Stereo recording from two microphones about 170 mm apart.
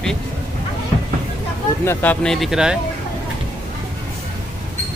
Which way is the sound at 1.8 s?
10° left (ahead or behind).